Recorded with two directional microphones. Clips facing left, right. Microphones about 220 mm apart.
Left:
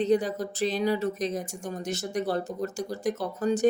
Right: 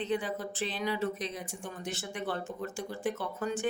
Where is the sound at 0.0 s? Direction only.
40° left (ahead or behind).